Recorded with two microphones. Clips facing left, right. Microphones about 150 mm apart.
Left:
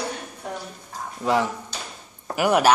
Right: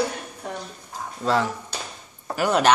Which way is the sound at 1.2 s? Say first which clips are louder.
Left 1 dB; 15° left (ahead or behind).